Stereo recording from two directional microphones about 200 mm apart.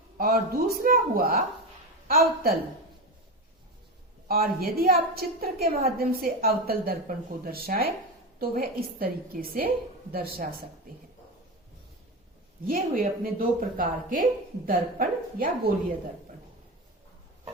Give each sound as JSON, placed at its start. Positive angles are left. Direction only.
{"t": 0.2, "sound": "a woman's voice", "side_deg": -50}
{"t": 4.3, "sound": "a woman's voice", "side_deg": -50}
{"t": 12.6, "sound": "a woman's voice", "side_deg": -45}